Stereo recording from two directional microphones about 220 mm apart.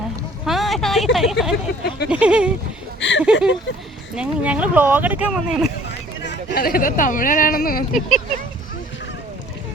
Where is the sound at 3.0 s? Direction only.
55° left (ahead or behind).